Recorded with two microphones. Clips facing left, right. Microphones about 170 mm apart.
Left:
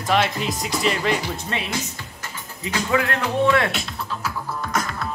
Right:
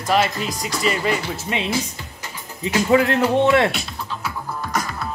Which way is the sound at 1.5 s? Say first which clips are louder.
Right 4 dB; 15° right (ahead or behind).